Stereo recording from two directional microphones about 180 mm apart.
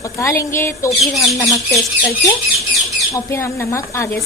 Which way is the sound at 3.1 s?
15° left (ahead or behind).